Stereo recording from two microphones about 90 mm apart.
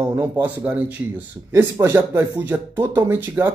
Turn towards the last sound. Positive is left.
turn(degrees=-25)  # may be behind; listen again after turning